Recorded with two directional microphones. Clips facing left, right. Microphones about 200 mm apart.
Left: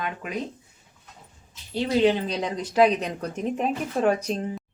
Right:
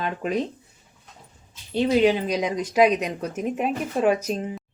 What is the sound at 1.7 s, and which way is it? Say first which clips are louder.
Speech: right 2 dB; 20° right (ahead or behind).